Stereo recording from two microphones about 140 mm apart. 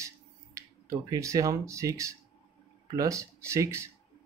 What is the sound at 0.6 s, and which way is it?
Speech, 20° right (ahead or behind).